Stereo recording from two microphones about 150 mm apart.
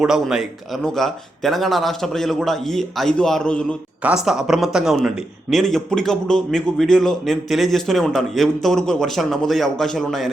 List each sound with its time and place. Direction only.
0.0 s a man's voice: 5° right (ahead or behind)
4.0 s a man's voice: 5° right (ahead or behind)